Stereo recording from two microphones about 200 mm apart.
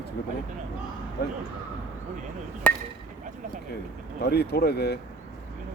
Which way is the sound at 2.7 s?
5° left (ahead or behind).